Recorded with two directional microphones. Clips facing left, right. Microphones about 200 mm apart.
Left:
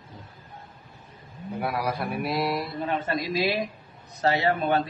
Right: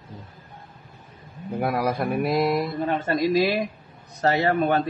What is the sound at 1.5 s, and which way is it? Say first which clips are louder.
A man's voice: right 5 dB; 45° right (ahead or behind).